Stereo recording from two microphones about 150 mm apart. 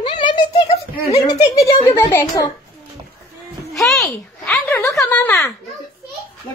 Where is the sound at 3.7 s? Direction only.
Centre (ahead or behind).